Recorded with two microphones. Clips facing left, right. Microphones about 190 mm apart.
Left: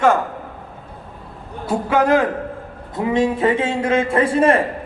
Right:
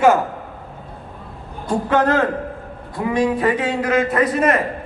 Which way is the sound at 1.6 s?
10° left (ahead or behind).